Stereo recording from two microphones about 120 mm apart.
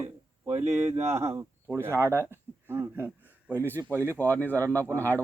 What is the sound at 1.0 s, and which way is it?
Speech, 20° right (ahead or behind).